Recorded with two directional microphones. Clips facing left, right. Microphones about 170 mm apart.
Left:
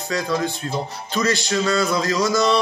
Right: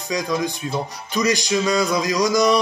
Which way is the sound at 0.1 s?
15° right (ahead or behind).